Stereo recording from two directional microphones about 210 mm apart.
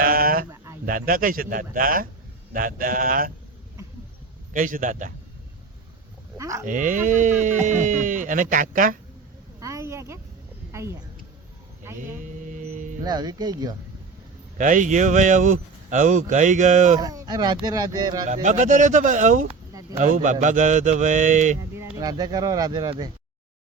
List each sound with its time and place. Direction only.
0.0 s a sound: 45° right (ahead or behind)
0.5 s a sound: 15° right (ahead or behind)
0.9 s speech: 40° right (ahead or behind)
4.5 s speech: 40° right (ahead or behind)
6.3 s cattle: 15° right (ahead or behind)
6.7 s speech: 40° right (ahead or behind)
9.6 s a sound: 15° right (ahead or behind)
12.1 s mantra: 40° right (ahead or behind)
13.0 s speech: 20° right (ahead or behind)
14.6 s speech: 35° right (ahead or behind)
17.0 s speech: 20° right (ahead or behind)
18.4 s speech: 35° right (ahead or behind)
21.8 s speech: 15° right (ahead or behind)